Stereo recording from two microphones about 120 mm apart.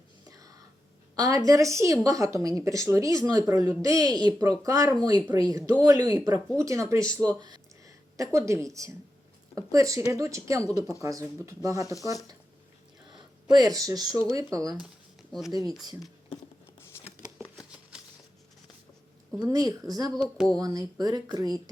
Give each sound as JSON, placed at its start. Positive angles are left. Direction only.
{"t": 0.3, "sound": "whispering", "side_deg": -30}
{"t": 1.1, "sound": "a woman's voice", "side_deg": -30}
{"t": 13.1, "sound": "a sound", "side_deg": -35}
{"t": 14.5, "sound": "speech", "side_deg": -30}
{"t": 15.3, "sound": "speech", "side_deg": 0}
{"t": 19.4, "sound": "speech", "side_deg": -30}